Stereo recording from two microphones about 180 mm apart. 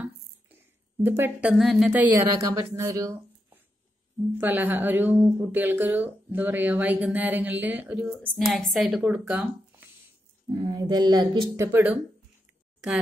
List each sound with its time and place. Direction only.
1.0 s a woman's voice: 10° right (ahead or behind)
1.9 s a woman's voice: 10° right (ahead or behind)
4.4 s a woman's voice: 10° right (ahead or behind)
8.1 s speech: 5° left (ahead or behind)
10.5 s speech: 25° right (ahead or behind)
11.6 s a woman's voice: 10° right (ahead or behind)